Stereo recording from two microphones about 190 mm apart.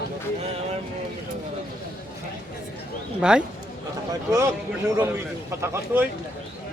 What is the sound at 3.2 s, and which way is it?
Speech, 5° right (ahead or behind).